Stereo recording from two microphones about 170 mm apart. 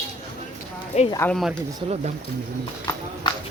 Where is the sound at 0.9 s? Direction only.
40° left (ahead or behind).